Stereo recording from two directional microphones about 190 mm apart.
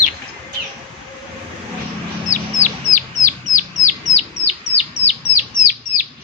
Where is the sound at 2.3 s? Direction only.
40° left (ahead or behind).